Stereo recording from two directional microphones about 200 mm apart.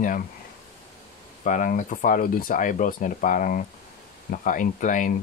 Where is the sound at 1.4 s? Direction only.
40° left (ahead or behind).